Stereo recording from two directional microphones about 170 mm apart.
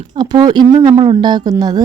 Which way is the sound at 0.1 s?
25° right (ahead or behind).